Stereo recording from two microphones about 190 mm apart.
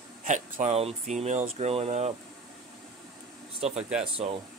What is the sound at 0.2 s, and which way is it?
Speech, 40° right (ahead or behind).